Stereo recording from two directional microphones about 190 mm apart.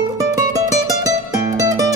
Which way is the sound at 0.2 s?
20° right (ahead or behind).